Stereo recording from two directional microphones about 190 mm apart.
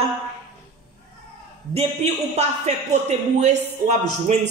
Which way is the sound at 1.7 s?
35° right (ahead or behind).